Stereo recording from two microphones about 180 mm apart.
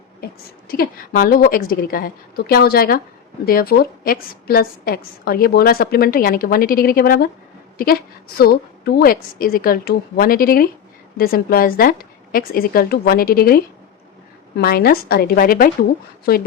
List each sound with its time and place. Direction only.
0.7 s a woman's voice: 55° left (ahead or behind)
8.4 s a woman's voice: 55° left (ahead or behind)
14.6 s a woman's voice: 55° left (ahead or behind)